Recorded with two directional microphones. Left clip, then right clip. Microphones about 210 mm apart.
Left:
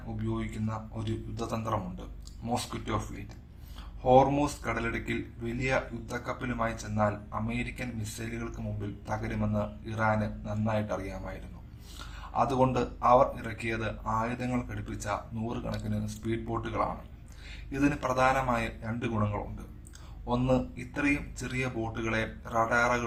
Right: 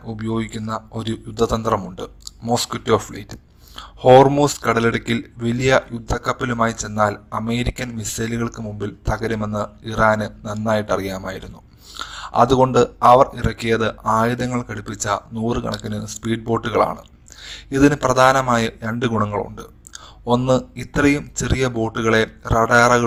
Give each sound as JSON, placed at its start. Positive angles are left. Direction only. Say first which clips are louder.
{"t": 0.2, "sound": "speech", "louder": "right 11 dB", "side_deg": -40}